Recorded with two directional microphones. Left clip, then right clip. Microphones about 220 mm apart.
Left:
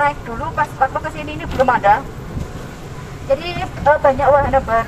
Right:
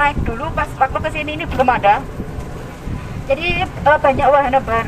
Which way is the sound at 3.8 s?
25° right (ahead or behind).